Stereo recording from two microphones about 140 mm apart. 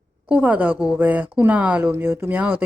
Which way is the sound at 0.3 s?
10° right (ahead or behind).